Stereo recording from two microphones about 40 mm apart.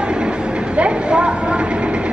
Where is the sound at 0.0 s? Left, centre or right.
Right.